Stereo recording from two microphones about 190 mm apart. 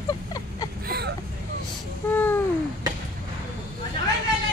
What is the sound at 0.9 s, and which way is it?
Vehicle, 55° right (ahead or behind).